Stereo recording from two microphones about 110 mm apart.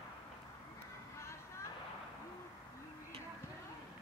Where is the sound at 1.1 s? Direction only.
25° left (ahead or behind).